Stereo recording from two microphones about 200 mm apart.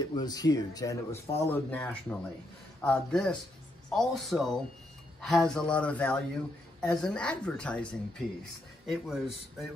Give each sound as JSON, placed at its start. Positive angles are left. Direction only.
{"t": 0.0, "sound": "a woman's voice", "side_deg": 20}